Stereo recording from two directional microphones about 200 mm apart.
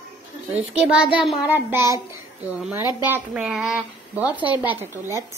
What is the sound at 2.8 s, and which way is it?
Speech, 20° left (ahead or behind).